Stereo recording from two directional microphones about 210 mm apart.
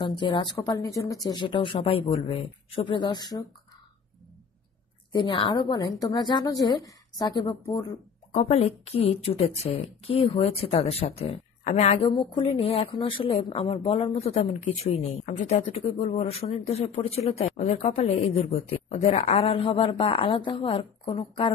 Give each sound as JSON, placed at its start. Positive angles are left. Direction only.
{"t": 0.0, "sound": "a woman's voice", "side_deg": 20}
{"t": 5.1, "sound": "a woman's voice", "side_deg": 20}
{"t": 8.3, "sound": "a woman's voice", "side_deg": 30}